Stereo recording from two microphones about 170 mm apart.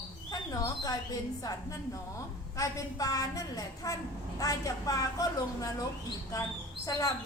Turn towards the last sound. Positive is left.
turn(degrees=20)  # may be behind; listen again after turning